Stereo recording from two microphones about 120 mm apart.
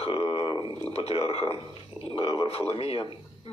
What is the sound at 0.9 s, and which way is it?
Speech, 55° left (ahead or behind).